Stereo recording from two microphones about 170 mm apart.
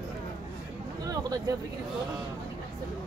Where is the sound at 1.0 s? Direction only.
20° right (ahead or behind).